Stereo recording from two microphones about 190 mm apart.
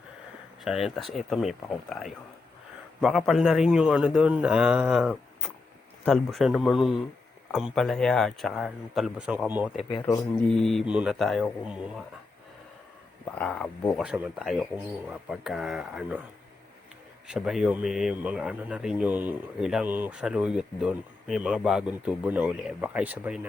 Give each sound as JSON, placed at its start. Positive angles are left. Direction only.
{"t": 0.6, "sound": "speech", "side_deg": 0}
{"t": 9.9, "sound": "speech", "side_deg": 20}
{"t": 10.5, "sound": "speech", "side_deg": 0}
{"t": 13.2, "sound": "speech", "side_deg": 5}
{"t": 17.2, "sound": "speech", "side_deg": -5}